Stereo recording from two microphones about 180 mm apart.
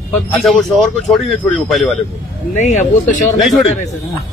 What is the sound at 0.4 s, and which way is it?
A man's voice, centre (ahead or behind).